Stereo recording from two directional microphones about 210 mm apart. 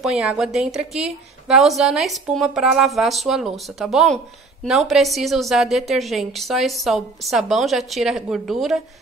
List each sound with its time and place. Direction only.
0.0 s a woman's voice: 5° right (ahead or behind)